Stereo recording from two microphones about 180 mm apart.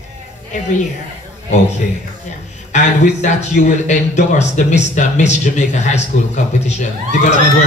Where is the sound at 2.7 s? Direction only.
40° left (ahead or behind).